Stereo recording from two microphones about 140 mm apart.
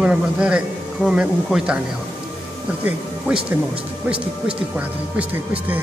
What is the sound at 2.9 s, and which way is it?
Speech, 10° right (ahead or behind).